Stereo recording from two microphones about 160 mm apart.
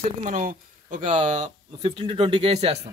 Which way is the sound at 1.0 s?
30° right (ahead or behind).